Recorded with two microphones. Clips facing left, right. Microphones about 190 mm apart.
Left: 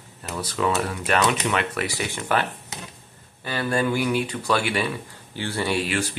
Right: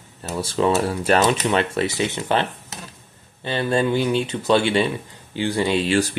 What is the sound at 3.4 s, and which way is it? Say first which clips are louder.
Speech: right 3 dB; 25° right (ahead or behind).